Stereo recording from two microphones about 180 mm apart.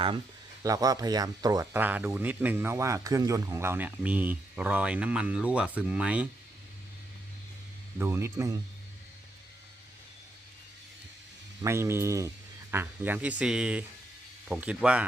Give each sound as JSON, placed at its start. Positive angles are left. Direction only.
{"t": 0.6, "sound": "speech", "side_deg": -20}
{"t": 1.7, "sound": "speech", "side_deg": -10}
{"t": 7.9, "sound": "speech", "side_deg": -15}
{"t": 11.6, "sound": "speech", "side_deg": -15}